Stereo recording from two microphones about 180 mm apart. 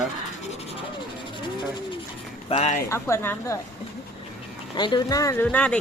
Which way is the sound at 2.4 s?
35° left (ahead or behind).